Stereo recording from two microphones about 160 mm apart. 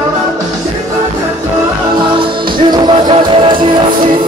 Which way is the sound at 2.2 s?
30° right (ahead or behind).